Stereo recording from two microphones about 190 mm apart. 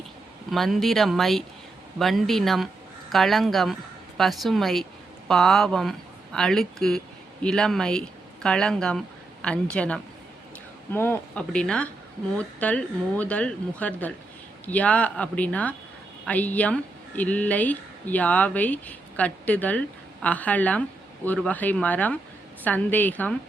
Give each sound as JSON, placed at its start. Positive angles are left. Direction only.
{"t": 0.5, "sound": "speech", "side_deg": 0}